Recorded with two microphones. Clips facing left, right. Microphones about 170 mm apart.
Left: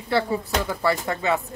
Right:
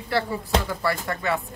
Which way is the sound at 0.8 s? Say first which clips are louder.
Left 3 dB; 20° left (ahead or behind).